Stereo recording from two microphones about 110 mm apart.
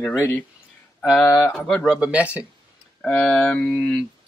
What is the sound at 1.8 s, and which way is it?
Speech, 10° right (ahead or behind).